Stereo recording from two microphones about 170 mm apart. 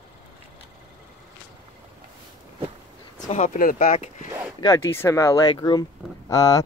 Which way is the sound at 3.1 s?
45° left (ahead or behind).